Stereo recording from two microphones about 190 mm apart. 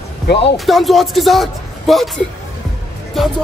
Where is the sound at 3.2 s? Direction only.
Centre (ahead or behind).